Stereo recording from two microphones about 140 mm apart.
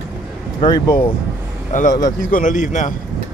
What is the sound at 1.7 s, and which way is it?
A man's voice, 65° left (ahead or behind).